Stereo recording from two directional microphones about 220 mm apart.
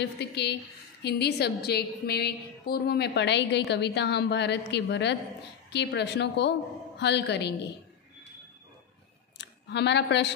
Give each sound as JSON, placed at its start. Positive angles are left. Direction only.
{"t": 0.0, "sound": "a woman's voice", "side_deg": 50}
{"t": 9.4, "sound": "speech", "side_deg": 50}